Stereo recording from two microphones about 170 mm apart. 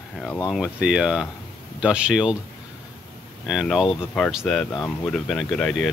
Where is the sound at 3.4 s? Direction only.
Centre (ahead or behind).